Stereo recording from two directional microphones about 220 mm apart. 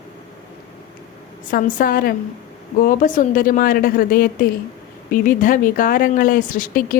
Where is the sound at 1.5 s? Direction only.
40° left (ahead or behind).